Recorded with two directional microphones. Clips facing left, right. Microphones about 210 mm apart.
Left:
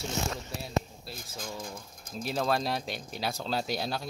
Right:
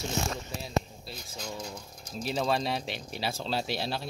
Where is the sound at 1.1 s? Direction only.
Centre (ahead or behind).